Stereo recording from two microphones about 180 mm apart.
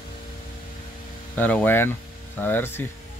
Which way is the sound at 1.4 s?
10° left (ahead or behind).